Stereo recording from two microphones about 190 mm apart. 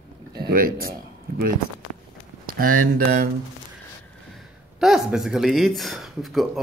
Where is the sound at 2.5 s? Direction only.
50° right (ahead or behind).